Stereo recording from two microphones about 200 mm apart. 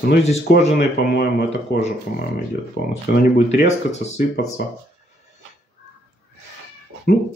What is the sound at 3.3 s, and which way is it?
Speech, 35° left (ahead or behind).